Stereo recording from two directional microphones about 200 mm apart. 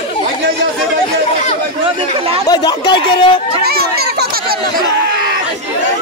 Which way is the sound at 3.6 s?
50° right (ahead or behind).